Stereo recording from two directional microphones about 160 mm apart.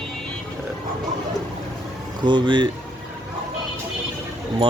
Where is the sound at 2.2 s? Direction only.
30° right (ahead or behind).